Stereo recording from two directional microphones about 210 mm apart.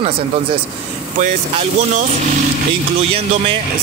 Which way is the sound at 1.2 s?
35° right (ahead or behind).